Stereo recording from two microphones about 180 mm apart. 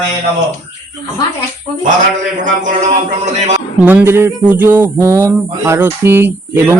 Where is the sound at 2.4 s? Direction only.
45° right (ahead or behind).